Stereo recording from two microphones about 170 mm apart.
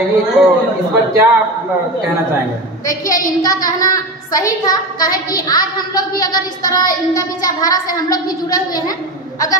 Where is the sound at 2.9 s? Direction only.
20° left (ahead or behind).